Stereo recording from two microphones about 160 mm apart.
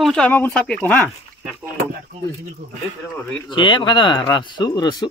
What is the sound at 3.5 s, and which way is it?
Speech, 30° left (ahead or behind).